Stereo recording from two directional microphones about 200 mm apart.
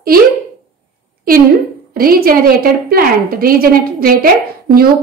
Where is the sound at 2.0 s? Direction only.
45° right (ahead or behind).